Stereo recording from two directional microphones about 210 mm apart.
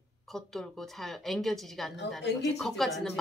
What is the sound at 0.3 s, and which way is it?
A woman's voice, centre (ahead or behind).